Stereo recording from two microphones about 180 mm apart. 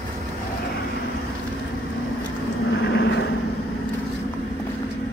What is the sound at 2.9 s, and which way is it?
Vehicle, 80° left.